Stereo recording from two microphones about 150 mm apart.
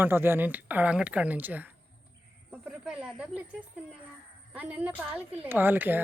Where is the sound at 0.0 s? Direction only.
15° right (ahead or behind).